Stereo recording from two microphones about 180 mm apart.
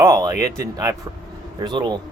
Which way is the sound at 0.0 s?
20° right (ahead or behind).